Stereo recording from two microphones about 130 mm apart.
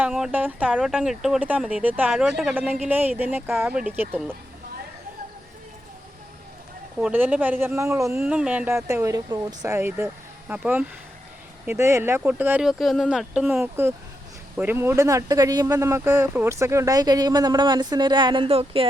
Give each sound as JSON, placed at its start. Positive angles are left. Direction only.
{"t": 0.1, "sound": "speech", "side_deg": -10}
{"t": 7.0, "sound": "speech", "side_deg": -15}
{"t": 8.1, "sound": "speech", "side_deg": -5}
{"t": 8.9, "sound": "speech", "side_deg": -25}
{"t": 13.5, "sound": "speech", "side_deg": -20}